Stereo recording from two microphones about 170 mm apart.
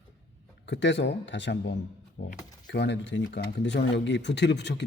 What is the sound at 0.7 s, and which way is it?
Speech, 90° left.